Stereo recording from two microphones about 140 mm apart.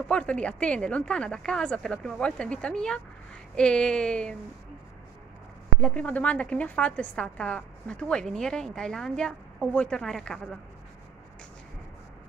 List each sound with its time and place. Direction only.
0.1 s a woman's voice: 10° left (ahead or behind)
5.8 s a woman's voice: 10° left (ahead or behind)